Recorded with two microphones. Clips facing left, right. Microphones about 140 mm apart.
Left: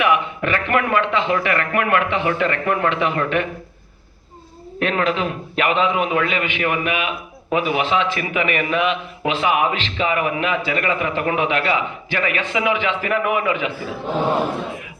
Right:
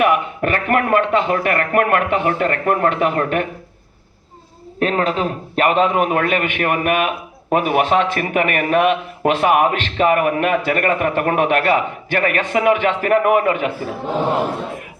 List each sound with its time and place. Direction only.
0.0 s a man's voice: 45° right (ahead or behind)
4.8 s a man's voice: 40° right (ahead or behind)